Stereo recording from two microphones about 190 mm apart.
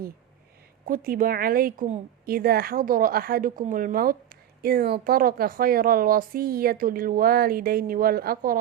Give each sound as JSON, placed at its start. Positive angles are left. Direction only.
{"t": 0.9, "sound": "a woman's voice", "side_deg": -45}